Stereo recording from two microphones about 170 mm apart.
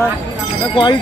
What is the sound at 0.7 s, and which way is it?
Speech, 25° left (ahead or behind).